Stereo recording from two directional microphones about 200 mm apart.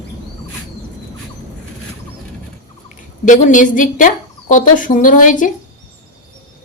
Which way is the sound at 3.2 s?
40° left (ahead or behind).